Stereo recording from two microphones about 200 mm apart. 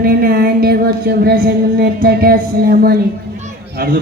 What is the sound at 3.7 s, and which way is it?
Speech, 50° right (ahead or behind).